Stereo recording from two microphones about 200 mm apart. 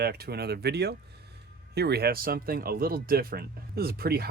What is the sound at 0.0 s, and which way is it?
Speech, 50° right (ahead or behind).